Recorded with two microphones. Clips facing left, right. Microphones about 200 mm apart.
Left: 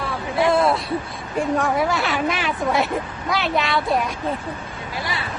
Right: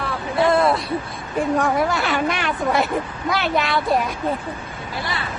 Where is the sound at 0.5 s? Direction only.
Centre (ahead or behind).